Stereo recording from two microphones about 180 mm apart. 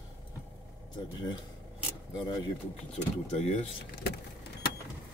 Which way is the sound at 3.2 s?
35° left (ahead or behind).